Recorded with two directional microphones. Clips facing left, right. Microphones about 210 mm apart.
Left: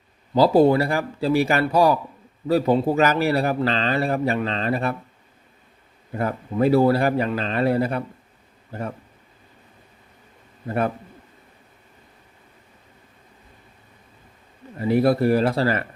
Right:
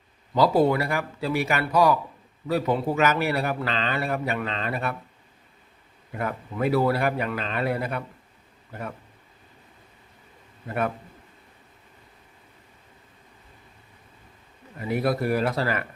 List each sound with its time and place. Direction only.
0.3 s a man's voice: 30° left (ahead or behind)
6.1 s a man's voice: 30° left (ahead or behind)
10.7 s a man's voice: 30° left (ahead or behind)
14.8 s a man's voice: 30° left (ahead or behind)